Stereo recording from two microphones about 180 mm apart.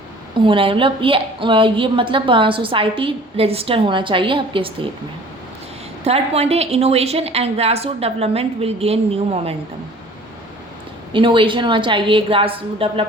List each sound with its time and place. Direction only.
0.3 s a woman's voice: 30° right (ahead or behind)
6.1 s a woman's voice: 35° right (ahead or behind)
11.1 s a woman's voice: 30° right (ahead or behind)